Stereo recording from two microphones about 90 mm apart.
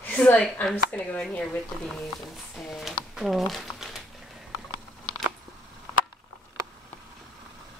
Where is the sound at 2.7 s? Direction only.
Centre (ahead or behind).